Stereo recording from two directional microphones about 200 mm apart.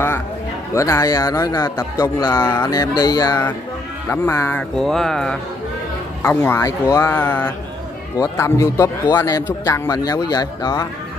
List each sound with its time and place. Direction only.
0.7 s a man's voice: 15° left (ahead or behind)